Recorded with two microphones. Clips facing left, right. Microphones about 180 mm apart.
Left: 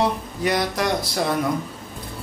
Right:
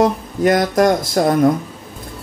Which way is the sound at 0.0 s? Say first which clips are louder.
Right 7 dB; 45° right (ahead or behind).